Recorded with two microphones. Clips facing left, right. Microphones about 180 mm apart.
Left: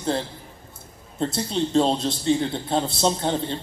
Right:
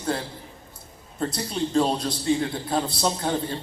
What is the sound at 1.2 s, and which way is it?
Speech, 25° left (ahead or behind).